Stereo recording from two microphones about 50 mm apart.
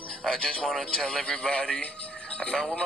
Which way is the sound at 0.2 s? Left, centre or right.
Centre.